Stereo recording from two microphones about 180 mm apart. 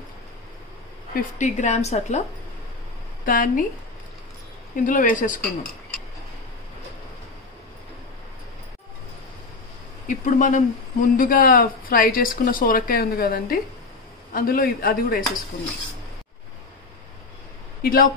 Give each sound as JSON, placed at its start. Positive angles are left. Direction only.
{"t": 1.1, "sound": "a woman's voice", "side_deg": 40}
{"t": 3.3, "sound": "speech", "side_deg": 50}
{"t": 4.7, "sound": "speech", "side_deg": 45}
{"t": 10.0, "sound": "speech", "side_deg": 45}
{"t": 17.8, "sound": "speech", "side_deg": 55}